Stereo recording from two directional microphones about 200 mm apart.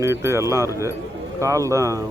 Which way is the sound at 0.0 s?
15° right (ahead or behind).